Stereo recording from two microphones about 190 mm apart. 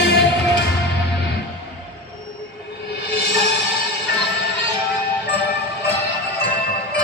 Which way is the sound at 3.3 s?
60° left (ahead or behind).